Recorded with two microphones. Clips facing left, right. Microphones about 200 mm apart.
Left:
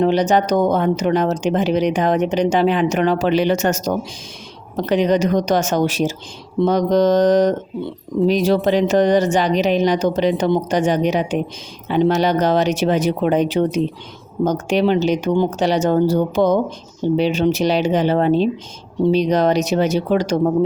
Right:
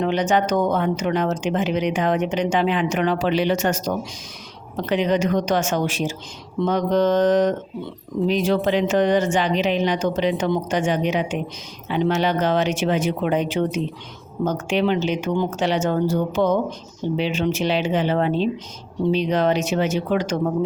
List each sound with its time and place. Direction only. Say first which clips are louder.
0.0 s speech: left 4 dB; 35° left (ahead or behind)